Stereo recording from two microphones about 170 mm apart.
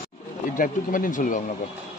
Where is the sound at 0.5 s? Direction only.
55° left (ahead or behind).